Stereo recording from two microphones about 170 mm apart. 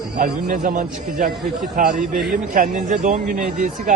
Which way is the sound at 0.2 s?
55° right (ahead or behind).